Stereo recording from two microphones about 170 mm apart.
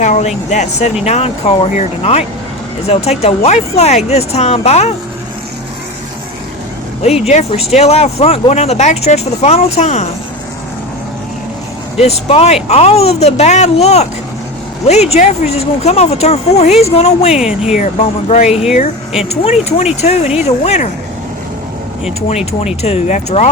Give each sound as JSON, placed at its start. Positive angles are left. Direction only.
{"t": 0.0, "sound": "speech", "side_deg": 45}
{"t": 7.3, "sound": "speech", "side_deg": 40}
{"t": 11.9, "sound": "speech", "side_deg": 35}
{"t": 15.1, "sound": "speech", "side_deg": 35}
{"t": 17.3, "sound": "speech", "side_deg": -5}
{"t": 18.3, "sound": "speech", "side_deg": 40}
{"t": 22.6, "sound": "speech", "side_deg": 40}